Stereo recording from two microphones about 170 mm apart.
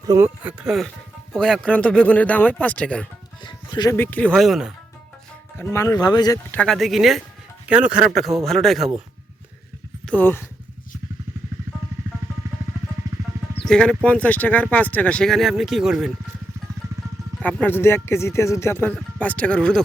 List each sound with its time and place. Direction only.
0.1 s speech: 15° right (ahead or behind)
0.6 s speech: centre (ahead or behind)
3.4 s speech: 25° left (ahead or behind)
3.9 s speech: 10° left (ahead or behind)
5.5 s speech: 15° left (ahead or behind)
6.5 s speech: 5° left (ahead or behind)
10.1 s speech: 10° left (ahead or behind)
13.7 s speech: 5° left (ahead or behind)
17.4 s speech: 10° left (ahead or behind)